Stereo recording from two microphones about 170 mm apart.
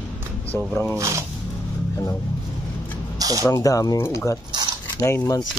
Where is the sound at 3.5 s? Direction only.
20° left (ahead or behind).